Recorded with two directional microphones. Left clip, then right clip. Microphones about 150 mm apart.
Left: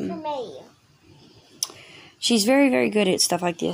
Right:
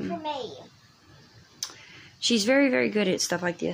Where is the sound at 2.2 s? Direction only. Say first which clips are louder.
Left 3 dB; 25° left (ahead or behind).